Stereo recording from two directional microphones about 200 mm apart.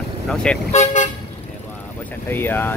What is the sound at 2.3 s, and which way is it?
Speech, 10° left (ahead or behind).